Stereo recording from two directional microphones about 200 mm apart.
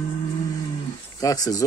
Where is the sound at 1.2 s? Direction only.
20° left (ahead or behind).